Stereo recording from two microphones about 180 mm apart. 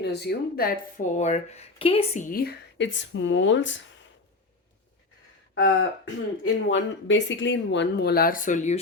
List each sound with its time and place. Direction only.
0.0 s speech: 65° left (ahead or behind); by 2.0 s 30° left (ahead or behind)
2.1 s speech: 50° left (ahead or behind); by 3.8 s 90° left
5.5 s speech: 85° left; by 8.8 s 40° left (ahead or behind)